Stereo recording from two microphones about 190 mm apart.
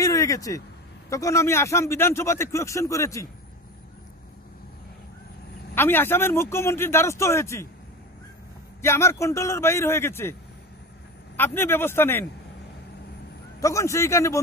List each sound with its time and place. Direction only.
0.0 s vehicle: 20° left (ahead or behind)
1.1 s speech: 15° left (ahead or behind)
5.8 s speech: 10° left (ahead or behind)
8.8 s speech: 15° left (ahead or behind)
11.3 s speech: 10° left (ahead or behind)
13.6 s speech: 15° left (ahead or behind)